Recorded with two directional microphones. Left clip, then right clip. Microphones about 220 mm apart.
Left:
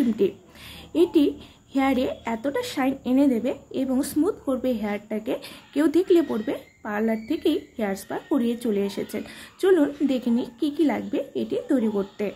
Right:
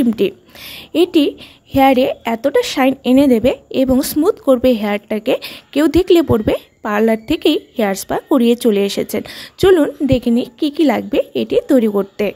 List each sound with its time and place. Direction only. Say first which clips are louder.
0.1 s a woman's voice: right 6 dB; 45° right (ahead or behind)